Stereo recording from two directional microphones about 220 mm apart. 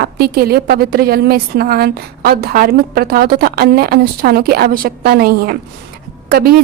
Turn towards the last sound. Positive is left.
turn(degrees=-45)  # may be behind; listen again after turning